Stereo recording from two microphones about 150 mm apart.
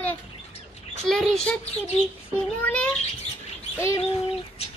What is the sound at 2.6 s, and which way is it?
Speech, 10° left (ahead or behind).